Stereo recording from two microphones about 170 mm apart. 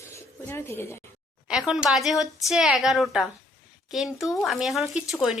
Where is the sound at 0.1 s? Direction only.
15° left (ahead or behind).